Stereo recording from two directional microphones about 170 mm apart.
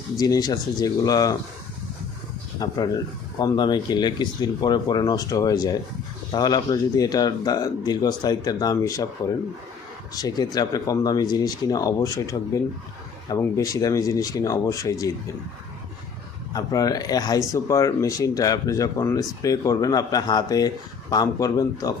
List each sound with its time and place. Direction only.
0.2 s speech: 20° left (ahead or behind)
2.6 s speech: 20° left (ahead or behind)
16.5 s speech: 20° left (ahead or behind)